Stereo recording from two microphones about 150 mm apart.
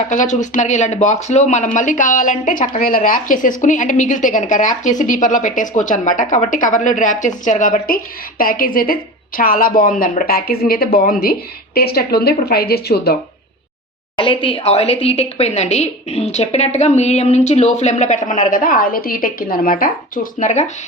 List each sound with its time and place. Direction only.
0.1 s speech: 55° left (ahead or behind)
8.4 s a woman's voice: 70° left (ahead or behind); by 13.1 s 90° left
14.2 s a woman's voice: 35° left (ahead or behind); by 20.7 s 55° left (ahead or behind)